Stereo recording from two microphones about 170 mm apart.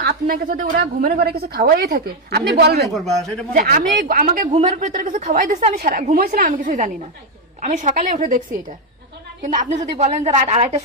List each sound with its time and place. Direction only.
0.0 s a woman's voice: 55° right (ahead or behind)
0.8 s a woman's voice: 65° right (ahead or behind)
2.9 s a man's voice: centre (ahead or behind)
3.5 s speech: 55° right (ahead or behind)
9.4 s a woman's voice: 45° right (ahead or behind)